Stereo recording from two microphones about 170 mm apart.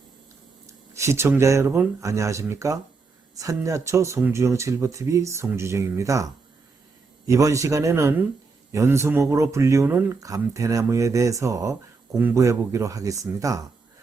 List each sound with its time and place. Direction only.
0.7 s speech: 15° right (ahead or behind)